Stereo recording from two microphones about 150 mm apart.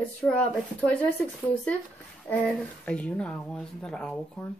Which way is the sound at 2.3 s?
10° left (ahead or behind).